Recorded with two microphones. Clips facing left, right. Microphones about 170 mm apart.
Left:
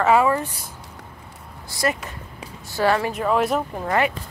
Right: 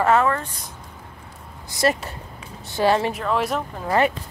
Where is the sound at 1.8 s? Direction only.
30° right (ahead or behind).